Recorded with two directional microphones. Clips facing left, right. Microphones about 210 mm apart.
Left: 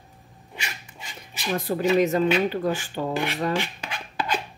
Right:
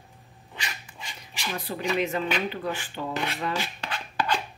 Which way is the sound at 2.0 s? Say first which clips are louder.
Left 6 dB; 40° left (ahead or behind).